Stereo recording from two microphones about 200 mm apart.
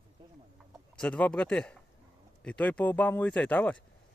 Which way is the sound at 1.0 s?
5° left (ahead or behind).